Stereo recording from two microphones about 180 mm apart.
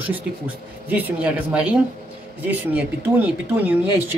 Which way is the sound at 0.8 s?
10° right (ahead or behind).